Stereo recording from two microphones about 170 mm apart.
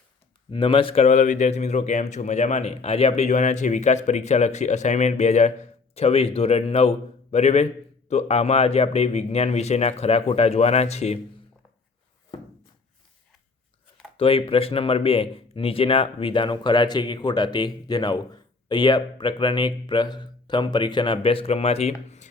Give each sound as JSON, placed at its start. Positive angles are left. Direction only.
{"t": 0.5, "sound": "speech", "side_deg": 30}
{"t": 14.2, "sound": "speech", "side_deg": 35}